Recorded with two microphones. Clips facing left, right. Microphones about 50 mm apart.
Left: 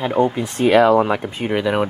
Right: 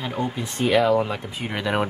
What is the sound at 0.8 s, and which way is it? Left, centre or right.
Speech, left.